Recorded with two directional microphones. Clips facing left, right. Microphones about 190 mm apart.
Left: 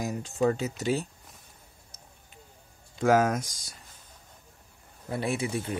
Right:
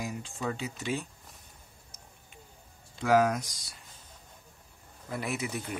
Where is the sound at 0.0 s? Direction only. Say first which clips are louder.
Left 8 dB; 40° left (ahead or behind).